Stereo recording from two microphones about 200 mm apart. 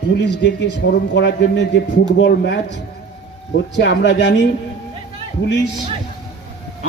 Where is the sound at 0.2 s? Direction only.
60° left (ahead or behind).